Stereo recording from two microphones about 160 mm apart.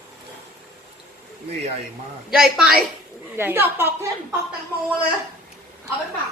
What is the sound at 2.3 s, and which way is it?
A woman's voice, 5° right (ahead or behind).